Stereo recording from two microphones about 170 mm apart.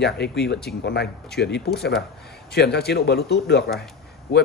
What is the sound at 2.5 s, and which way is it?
Speech, 75° left (ahead or behind).